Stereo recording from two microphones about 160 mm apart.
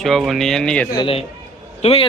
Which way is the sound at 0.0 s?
Centre (ahead or behind).